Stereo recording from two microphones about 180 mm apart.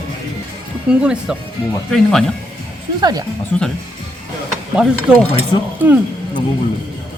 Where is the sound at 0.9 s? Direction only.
5° right (ahead or behind).